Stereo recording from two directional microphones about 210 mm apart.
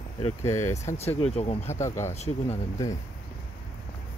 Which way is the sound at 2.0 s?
30° left (ahead or behind).